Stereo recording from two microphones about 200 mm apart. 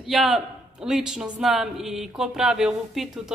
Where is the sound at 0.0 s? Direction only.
Centre (ahead or behind).